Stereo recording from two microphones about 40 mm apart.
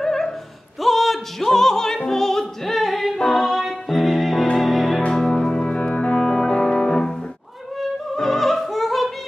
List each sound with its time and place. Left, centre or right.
0.0 s a sound: centre
0.7 s music: centre
5.3 s music: centre
6.1 s music: centre
8.2 s opera: centre